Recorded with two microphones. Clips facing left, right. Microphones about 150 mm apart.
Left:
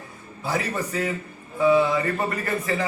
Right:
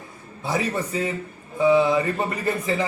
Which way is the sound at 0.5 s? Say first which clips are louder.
Right 2 dB; 20° right (ahead or behind).